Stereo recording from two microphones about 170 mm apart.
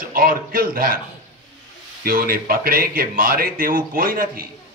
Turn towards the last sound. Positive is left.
turn(degrees=-60)  # may be behind; listen again after turning